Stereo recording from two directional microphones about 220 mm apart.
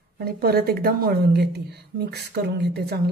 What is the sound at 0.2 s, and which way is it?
A woman's voice, 45° right (ahead or behind).